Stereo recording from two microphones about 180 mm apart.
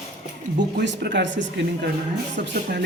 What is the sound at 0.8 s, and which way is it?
Speech, 70° right (ahead or behind).